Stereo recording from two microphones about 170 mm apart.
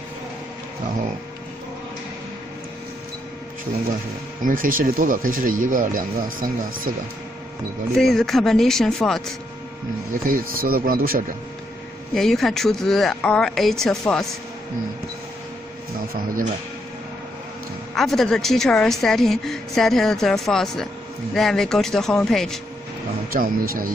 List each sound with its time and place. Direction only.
4.4 s speech: 55° right (ahead or behind)
7.9 s a woman's voice: centre (ahead or behind)
10.2 s speech: 55° right (ahead or behind)
12.1 s a woman's voice: centre (ahead or behind)
17.9 s a woman's voice: centre (ahead or behind)
23.3 s speech: 60° right (ahead or behind)